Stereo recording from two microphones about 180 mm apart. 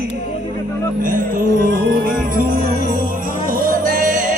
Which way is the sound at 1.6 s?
60° right (ahead or behind).